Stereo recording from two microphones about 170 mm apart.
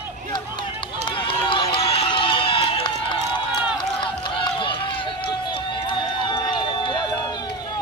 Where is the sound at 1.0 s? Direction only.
30° left (ahead or behind).